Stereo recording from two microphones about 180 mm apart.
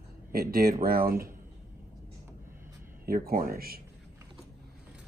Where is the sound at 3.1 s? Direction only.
55° right (ahead or behind).